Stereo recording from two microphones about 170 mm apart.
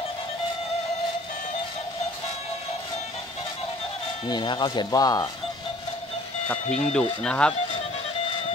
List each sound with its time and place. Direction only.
4.3 s speech: 30° left (ahead or behind)
6.4 s speech: 10° left (ahead or behind)